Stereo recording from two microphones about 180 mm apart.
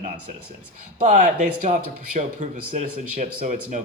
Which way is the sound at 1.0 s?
45° right (ahead or behind).